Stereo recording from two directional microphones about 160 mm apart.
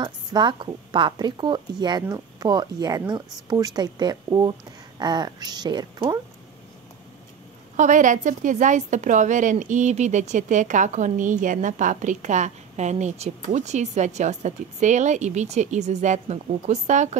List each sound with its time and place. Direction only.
0.0 s a woman's voice: 30° right (ahead or behind)
7.7 s a woman's voice: 50° right (ahead or behind)